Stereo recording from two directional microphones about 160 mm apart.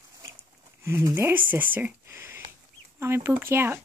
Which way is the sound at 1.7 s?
15° right (ahead or behind).